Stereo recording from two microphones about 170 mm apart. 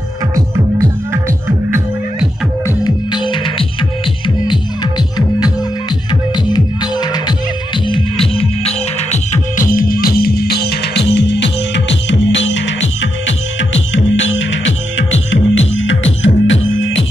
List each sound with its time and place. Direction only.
2.6 s music: 25° left (ahead or behind)
6.3 s music: 25° left (ahead or behind); by 17.0 s 90° left